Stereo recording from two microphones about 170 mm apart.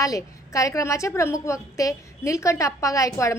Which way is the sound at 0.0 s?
20° left (ahead or behind).